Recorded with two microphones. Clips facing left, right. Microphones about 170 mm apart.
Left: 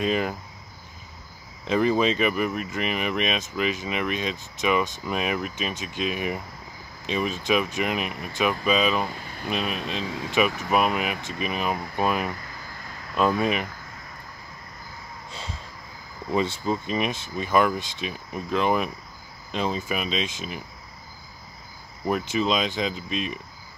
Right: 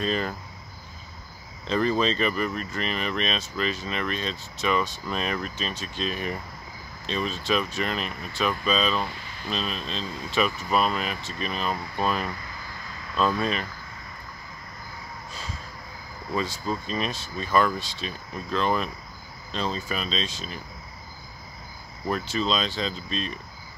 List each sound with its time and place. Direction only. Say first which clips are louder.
0.0 s speech: left 3 dB; 10° left (ahead or behind)
1.6 s speech: left 2 dB; 10° left (ahead or behind)
10.0 s speech: left 3 dB; 80° left
10.7 s speech: left 2 dB; 15° left (ahead or behind)
16.3 s speech: left 4 dB; 20° left (ahead or behind)
22.0 s speech: left 3 dB; 15° left (ahead or behind)